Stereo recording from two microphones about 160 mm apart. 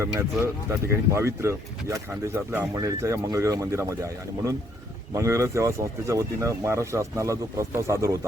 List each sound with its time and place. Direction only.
0.0 s speech: 15° right (ahead or behind)